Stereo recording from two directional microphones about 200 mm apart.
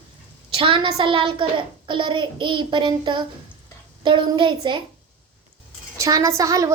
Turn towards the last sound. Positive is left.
turn(degrees=-15)  # may be behind; listen again after turning